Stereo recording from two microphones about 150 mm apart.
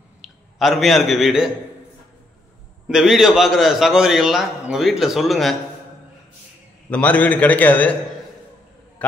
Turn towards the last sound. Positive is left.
turn(degrees=10)  # may be behind; listen again after turning